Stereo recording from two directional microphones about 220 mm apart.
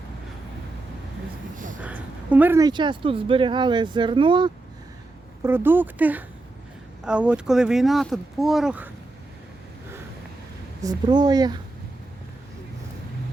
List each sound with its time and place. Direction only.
1.5 s a sound: 35° right (ahead or behind)
1.8 s speech: 5° right (ahead or behind)
5.4 s speech: 10° right (ahead or behind)
10.8 s speech: 20° right (ahead or behind)